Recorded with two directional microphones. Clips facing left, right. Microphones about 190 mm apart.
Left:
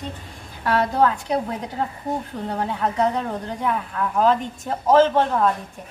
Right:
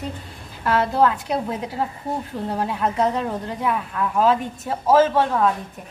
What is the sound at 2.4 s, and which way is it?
A woman's voice, 5° right (ahead or behind).